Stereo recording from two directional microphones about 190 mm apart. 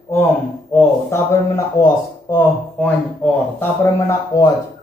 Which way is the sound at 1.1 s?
15° left (ahead or behind).